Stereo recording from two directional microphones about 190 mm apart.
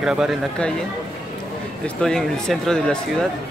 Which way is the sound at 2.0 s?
5° left (ahead or behind).